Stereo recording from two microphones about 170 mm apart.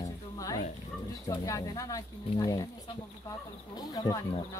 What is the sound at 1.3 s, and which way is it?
Speech, 20° left (ahead or behind).